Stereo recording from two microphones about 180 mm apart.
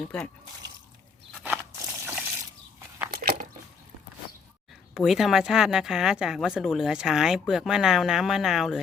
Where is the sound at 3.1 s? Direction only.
50° right (ahead or behind).